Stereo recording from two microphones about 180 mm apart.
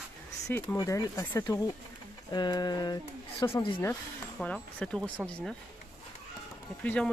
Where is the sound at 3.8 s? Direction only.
5° left (ahead or behind).